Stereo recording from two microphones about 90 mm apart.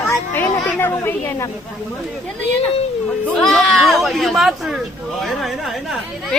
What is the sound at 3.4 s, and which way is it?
Speech, 5° left (ahead or behind).